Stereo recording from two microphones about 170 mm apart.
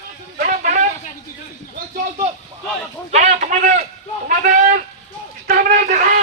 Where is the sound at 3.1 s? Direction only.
40° right (ahead or behind).